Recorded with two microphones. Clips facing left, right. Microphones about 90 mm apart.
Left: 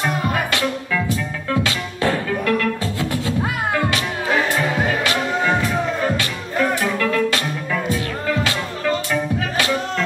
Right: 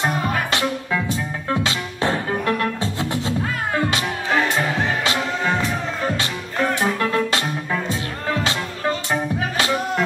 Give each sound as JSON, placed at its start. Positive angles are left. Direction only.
{"t": 0.5, "sound": "music", "side_deg": -25}
{"t": 5.0, "sound": "music", "side_deg": -25}
{"t": 6.7, "sound": "music", "side_deg": -25}
{"t": 8.5, "sound": "music", "side_deg": -25}